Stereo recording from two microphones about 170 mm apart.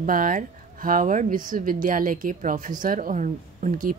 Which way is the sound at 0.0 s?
55° right (ahead or behind).